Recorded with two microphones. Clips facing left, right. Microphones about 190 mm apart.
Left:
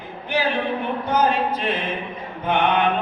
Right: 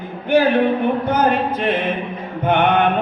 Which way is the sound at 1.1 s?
55° right (ahead or behind).